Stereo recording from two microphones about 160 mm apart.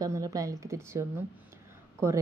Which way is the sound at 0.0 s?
20° right (ahead or behind).